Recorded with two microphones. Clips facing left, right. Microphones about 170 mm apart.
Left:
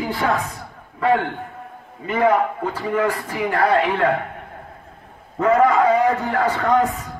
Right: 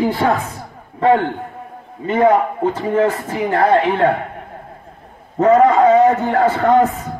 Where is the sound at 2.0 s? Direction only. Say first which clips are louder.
Right 4 dB; 30° right (ahead or behind).